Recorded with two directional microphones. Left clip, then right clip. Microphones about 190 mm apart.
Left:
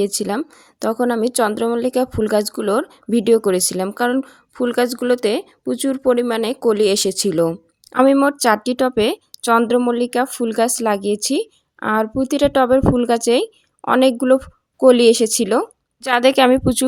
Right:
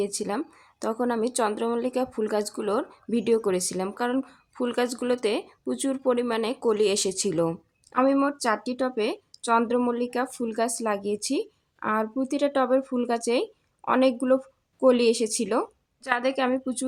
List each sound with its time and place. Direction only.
0.0 s speech: 35° left (ahead or behind)